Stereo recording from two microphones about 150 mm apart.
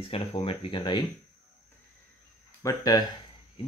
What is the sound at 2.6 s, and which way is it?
Speech, 25° left (ahead or behind).